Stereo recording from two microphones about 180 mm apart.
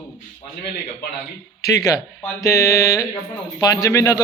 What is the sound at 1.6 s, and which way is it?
Speech, 20° left (ahead or behind).